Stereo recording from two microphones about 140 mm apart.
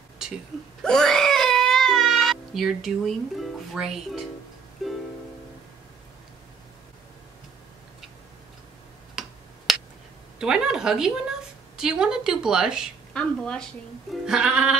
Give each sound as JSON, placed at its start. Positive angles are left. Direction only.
{"t": 0.2, "sound": "a sound", "side_deg": -5}
{"t": 0.8, "sound": "baby cry", "side_deg": 5}
{"t": 3.3, "sound": "speech", "side_deg": -5}
{"t": 4.8, "sound": "music", "side_deg": 0}
{"t": 9.7, "sound": "finger snapping", "side_deg": 0}
{"t": 10.4, "sound": "speech", "side_deg": -5}
{"t": 13.1, "sound": "a woman's voice", "side_deg": 5}
{"t": 14.2, "sound": "music", "side_deg": -5}